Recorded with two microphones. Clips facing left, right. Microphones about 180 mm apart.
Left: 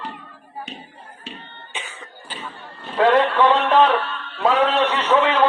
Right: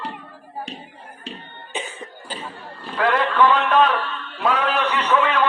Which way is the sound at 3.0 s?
25° left (ahead or behind).